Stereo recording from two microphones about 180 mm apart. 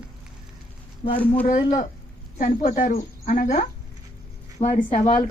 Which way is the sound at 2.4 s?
45° left (ahead or behind).